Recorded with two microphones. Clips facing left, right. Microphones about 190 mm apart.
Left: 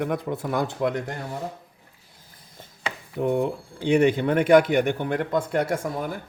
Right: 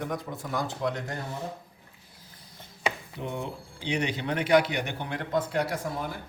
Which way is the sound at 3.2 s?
50° left (ahead or behind).